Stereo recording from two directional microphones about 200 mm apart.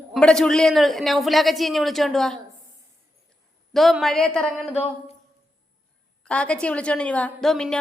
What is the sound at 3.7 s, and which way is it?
A woman's voice, centre (ahead or behind).